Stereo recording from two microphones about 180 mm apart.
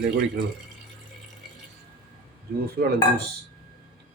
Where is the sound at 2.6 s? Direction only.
60° right (ahead or behind).